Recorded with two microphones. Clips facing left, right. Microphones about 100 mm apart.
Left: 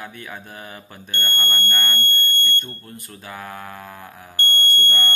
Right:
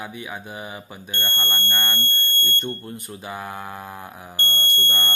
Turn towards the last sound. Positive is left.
turn(degrees=-20)  # may be behind; listen again after turning